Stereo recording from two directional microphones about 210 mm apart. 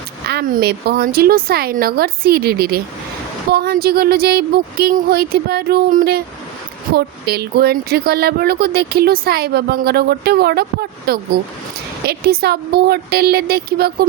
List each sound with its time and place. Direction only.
0.3 s speech: 45° right (ahead or behind)